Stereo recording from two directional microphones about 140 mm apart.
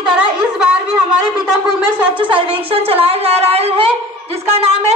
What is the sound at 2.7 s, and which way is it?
Wind instrument, 45° right (ahead or behind).